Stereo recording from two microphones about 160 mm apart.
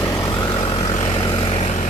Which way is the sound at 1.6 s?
45° left (ahead or behind).